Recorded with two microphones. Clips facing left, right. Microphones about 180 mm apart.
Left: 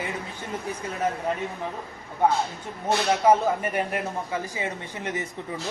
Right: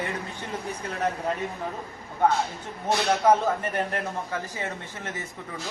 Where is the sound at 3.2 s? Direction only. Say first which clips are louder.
Left 2 dB; 10° left (ahead or behind).